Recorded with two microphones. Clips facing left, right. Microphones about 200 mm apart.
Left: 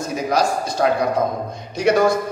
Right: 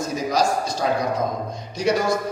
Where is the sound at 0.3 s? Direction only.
55° left (ahead or behind).